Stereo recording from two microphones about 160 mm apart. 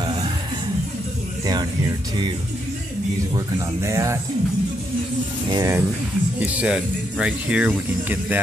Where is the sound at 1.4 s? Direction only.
25° right (ahead or behind).